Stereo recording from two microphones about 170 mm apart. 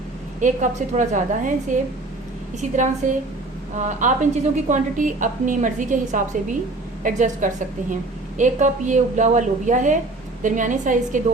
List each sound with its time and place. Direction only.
0.3 s a woman's voice: 50° right (ahead or behind)